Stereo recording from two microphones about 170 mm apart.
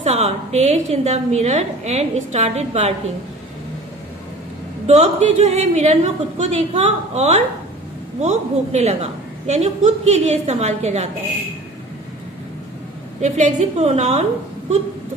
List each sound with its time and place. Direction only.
0.0 s a woman's voice: 40° right (ahead or behind)
4.8 s a woman's voice: 40° right (ahead or behind)
13.2 s a woman's voice: 45° right (ahead or behind)